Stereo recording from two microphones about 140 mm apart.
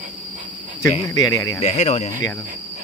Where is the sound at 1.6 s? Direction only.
55° left (ahead or behind).